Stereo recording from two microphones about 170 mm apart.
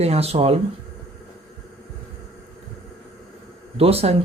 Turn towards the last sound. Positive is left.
turn(degrees=-35)  # may be behind; listen again after turning